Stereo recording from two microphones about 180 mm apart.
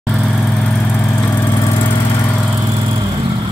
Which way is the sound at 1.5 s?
25° left (ahead or behind).